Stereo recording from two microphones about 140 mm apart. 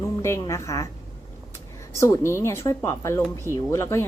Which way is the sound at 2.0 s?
20° left (ahead or behind).